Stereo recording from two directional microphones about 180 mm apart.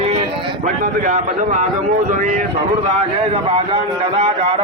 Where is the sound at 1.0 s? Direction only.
45° right (ahead or behind).